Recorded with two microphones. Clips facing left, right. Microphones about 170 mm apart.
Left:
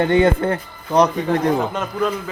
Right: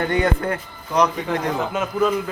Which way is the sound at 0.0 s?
25° left (ahead or behind).